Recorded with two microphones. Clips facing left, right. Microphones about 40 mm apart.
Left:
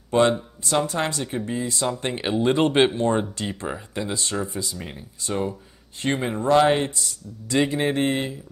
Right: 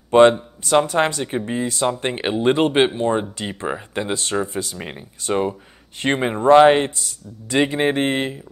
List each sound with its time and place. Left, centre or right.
0.1 s speech: right
4.0 s speech: right
4.5 s speech: right
4.7 s speech: right